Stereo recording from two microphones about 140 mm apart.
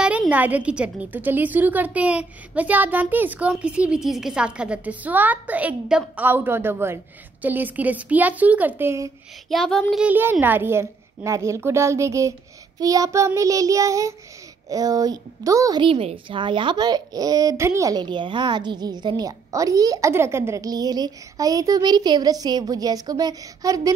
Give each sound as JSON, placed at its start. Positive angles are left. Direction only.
{"t": 0.0, "sound": "a woman's voice", "side_deg": -10}
{"t": 9.5, "sound": "child singing", "side_deg": 0}
{"t": 10.0, "sound": "a woman's voice", "side_deg": -15}
{"t": 15.8, "sound": "speech", "side_deg": -40}